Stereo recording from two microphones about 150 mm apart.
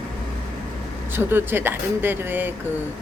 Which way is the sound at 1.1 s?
15° right (ahead or behind).